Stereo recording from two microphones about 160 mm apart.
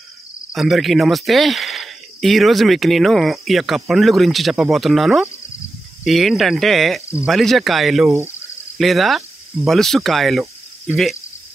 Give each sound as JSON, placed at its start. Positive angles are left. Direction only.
{"t": 0.5, "sound": "speech", "side_deg": 0}